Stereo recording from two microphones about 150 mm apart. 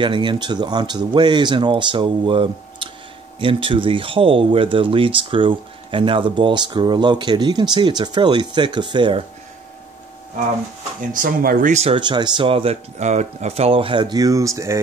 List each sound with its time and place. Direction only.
0.0 s speech: 30° right (ahead or behind)
11.0 s speech: 65° right (ahead or behind); by 12.0 s 45° right (ahead or behind)
12.0 s speech: 30° right (ahead or behind)